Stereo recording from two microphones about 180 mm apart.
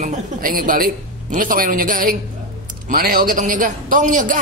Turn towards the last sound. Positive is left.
turn(degrees=-45)  # may be behind; listen again after turning